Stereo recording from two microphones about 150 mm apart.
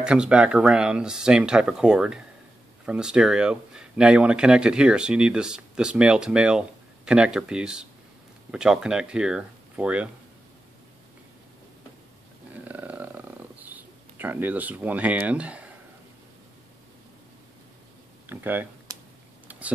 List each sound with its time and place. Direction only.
0.0 s speech: 5° right (ahead or behind)
12.6 s a sound: 10° right (ahead or behind)
18.3 s speech: 15° right (ahead or behind)